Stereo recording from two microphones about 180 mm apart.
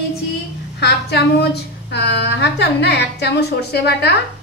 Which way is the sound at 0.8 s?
65° left (ahead or behind).